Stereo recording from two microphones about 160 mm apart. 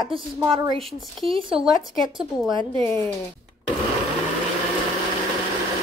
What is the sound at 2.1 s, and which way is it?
Speech, 30° right (ahead or behind).